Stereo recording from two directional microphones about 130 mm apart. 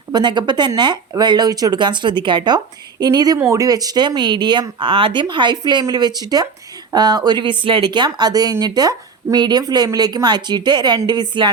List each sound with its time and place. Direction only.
0.1 s speech: 35° right (ahead or behind)